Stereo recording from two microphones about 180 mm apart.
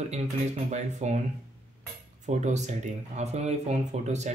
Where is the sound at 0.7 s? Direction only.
40° right (ahead or behind).